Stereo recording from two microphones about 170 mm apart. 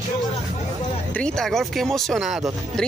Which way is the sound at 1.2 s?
Centre (ahead or behind).